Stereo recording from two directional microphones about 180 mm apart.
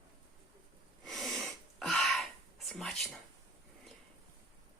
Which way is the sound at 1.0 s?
Centre (ahead or behind).